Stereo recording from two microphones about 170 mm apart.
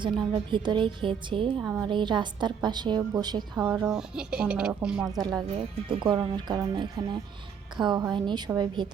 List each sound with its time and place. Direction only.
0.3 s speech: 25° right (ahead or behind)
1.6 s a woman's voice: 15° right (ahead or behind)
1.9 s speech: 30° right (ahead or behind)
3.6 s speech: 10° right (ahead or behind)
5.0 s speech: 20° right (ahead or behind)
5.5 s speech: 35° right (ahead or behind)